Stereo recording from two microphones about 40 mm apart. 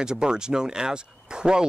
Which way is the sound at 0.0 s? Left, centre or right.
Centre.